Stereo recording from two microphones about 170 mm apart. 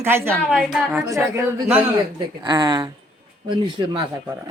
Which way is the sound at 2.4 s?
25° right (ahead or behind).